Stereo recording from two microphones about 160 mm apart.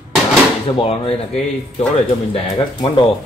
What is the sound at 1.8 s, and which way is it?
Music, 40° left (ahead or behind).